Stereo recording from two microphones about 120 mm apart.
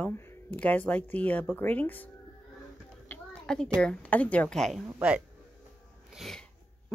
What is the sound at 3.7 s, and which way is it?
Speech, 10° left (ahead or behind).